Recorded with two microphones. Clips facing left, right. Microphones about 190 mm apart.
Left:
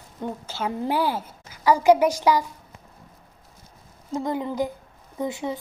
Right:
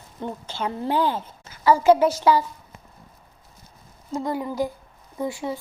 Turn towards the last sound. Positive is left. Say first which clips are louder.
# even
turn(degrees=20)  # may be behind; listen again after turning